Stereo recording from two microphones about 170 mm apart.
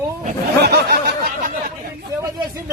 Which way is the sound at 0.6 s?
70° right (ahead or behind).